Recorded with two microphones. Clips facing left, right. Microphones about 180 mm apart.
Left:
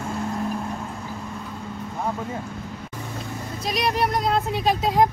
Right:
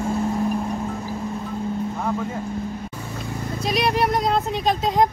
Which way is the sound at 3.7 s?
Centre (ahead or behind).